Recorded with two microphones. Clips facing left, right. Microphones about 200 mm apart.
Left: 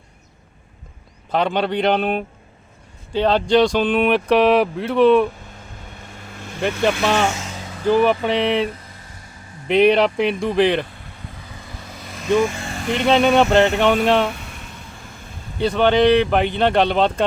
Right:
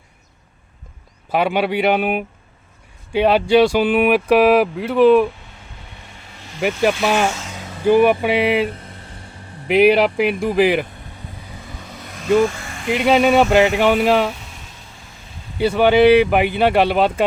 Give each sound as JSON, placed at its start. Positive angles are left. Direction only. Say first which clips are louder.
{"t": 1.3, "sound": "speech", "louder": "right 2 dB", "side_deg": -10}
{"t": 6.1, "sound": "vehicle", "louder": "left 7 dB", "side_deg": 50}
{"t": 7.0, "sound": "speech", "louder": "right 1 dB", "side_deg": -10}
{"t": 8.7, "sound": "a sound", "louder": "right 3 dB", "side_deg": -30}
{"t": 9.6, "sound": "speech", "louder": "right 1 dB", "side_deg": -5}
{"t": 12.4, "sound": "speech", "louder": "right 2 dB", "side_deg": 25}
{"t": 12.9, "sound": "speech", "louder": "right 1 dB", "side_deg": -5}
{"t": 15.5, "sound": "speech", "louder": "right 2 dB", "side_deg": -5}